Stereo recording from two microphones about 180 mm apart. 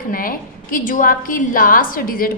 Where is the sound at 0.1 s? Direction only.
50° left (ahead or behind).